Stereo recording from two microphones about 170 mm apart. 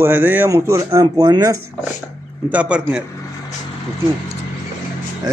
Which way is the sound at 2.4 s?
5° right (ahead or behind).